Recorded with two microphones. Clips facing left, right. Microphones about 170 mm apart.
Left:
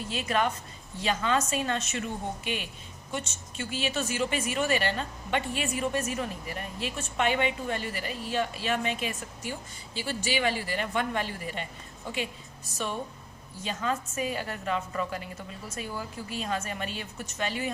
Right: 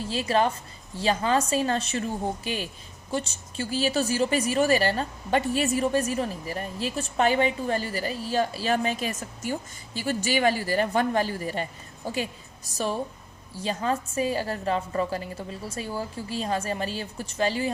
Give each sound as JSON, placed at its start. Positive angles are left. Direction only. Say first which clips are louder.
{"t": 0.0, "sound": "a woman's voice", "louder": "right 4 dB", "side_deg": -30}